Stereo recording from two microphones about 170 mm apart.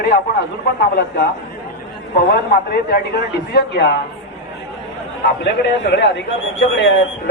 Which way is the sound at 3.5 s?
80° left.